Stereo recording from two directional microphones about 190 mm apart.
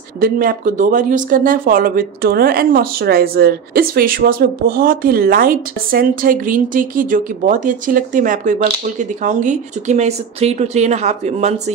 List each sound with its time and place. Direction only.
0.2 s speech: 45° right (ahead or behind)